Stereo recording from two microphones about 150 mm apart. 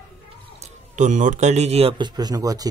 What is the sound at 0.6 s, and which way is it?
Speech, 55° right (ahead or behind).